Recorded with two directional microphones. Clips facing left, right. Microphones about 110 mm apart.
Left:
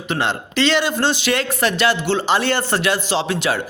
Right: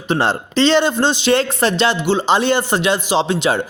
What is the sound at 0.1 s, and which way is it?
A man's voice, 35° right (ahead or behind).